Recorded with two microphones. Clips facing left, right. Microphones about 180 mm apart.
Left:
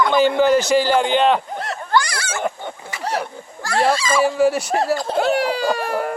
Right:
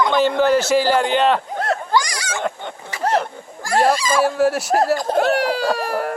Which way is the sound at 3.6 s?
15° right (ahead or behind).